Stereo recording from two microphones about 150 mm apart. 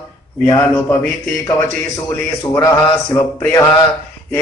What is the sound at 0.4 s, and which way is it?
Speech, 15° left (ahead or behind).